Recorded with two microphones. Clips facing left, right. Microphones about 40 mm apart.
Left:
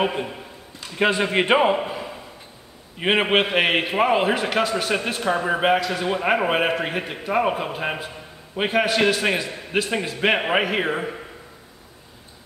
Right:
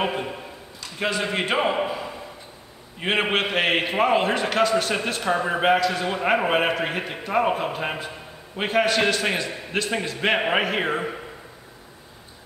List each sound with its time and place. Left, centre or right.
0.0 s a man's voice: centre
0.7 s a man's voice: left
3.0 s a man's voice: centre